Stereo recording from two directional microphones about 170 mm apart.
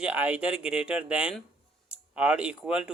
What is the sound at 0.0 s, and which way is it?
Speech, 10° right (ahead or behind).